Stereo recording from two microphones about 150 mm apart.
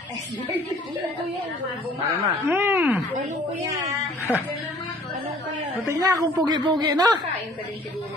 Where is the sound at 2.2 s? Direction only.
15° right (ahead or behind).